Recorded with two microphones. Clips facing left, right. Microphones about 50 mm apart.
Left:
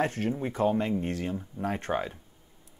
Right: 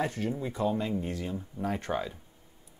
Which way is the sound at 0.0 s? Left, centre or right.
Left.